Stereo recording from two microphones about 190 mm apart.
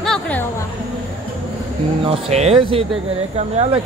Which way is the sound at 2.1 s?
35° right (ahead or behind).